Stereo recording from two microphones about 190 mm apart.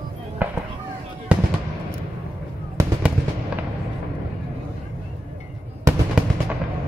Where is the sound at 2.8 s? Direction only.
15° right (ahead or behind).